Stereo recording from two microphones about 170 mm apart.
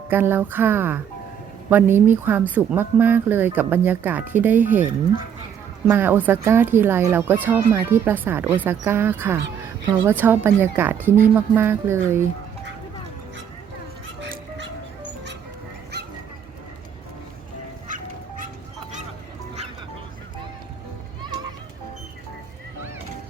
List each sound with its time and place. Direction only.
0.1 s speech: 10° right (ahead or behind)
5.9 s speech: 10° right (ahead or behind)
9.8 s a woman's voice: 25° right (ahead or behind)
10.1 s speech: 10° right (ahead or behind)
14.2 s music: 90° right
17.8 s music: 50° right (ahead or behind)